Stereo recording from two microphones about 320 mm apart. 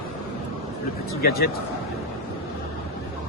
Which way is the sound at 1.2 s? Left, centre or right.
Left.